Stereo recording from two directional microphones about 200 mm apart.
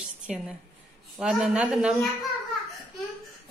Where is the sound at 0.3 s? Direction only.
35° right (ahead or behind).